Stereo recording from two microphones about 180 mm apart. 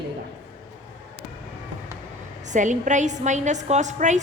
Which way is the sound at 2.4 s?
45° right (ahead or behind).